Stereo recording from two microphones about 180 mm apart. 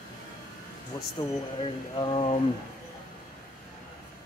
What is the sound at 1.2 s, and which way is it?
Speech, 25° left (ahead or behind).